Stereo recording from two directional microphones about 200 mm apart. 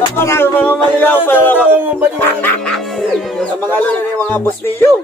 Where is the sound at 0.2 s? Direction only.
10° left (ahead or behind).